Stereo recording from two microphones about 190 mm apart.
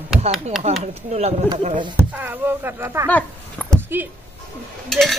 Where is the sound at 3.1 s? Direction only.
10° left (ahead or behind).